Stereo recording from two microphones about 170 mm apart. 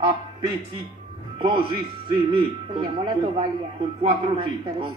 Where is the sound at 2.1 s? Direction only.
30° right (ahead or behind).